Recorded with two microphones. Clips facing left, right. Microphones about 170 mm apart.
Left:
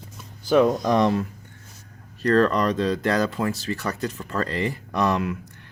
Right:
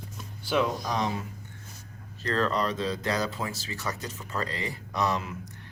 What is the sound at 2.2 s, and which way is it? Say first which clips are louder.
Speech: left 8 dB; 55° left (ahead or behind).